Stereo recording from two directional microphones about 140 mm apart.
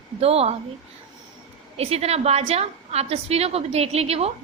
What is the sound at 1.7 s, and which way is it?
A woman's voice, 45° right (ahead or behind).